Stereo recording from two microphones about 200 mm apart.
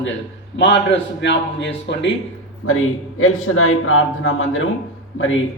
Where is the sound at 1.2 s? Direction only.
60° left (ahead or behind).